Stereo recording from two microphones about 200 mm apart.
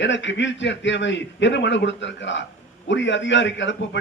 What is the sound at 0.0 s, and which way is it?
A man's voice, 65° left (ahead or behind).